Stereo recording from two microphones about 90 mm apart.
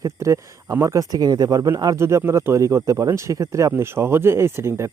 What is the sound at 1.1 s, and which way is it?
Speech, 45° right (ahead or behind).